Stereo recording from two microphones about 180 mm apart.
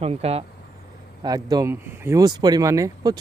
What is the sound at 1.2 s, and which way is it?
Speech, 20° right (ahead or behind).